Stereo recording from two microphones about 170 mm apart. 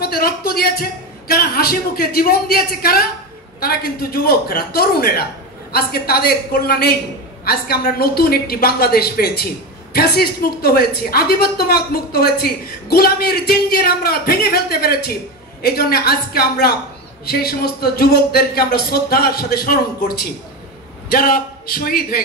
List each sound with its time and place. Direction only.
0.0 s a man's voice: 65° left (ahead or behind)